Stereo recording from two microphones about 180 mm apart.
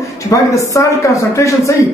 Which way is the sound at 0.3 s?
15° left (ahead or behind).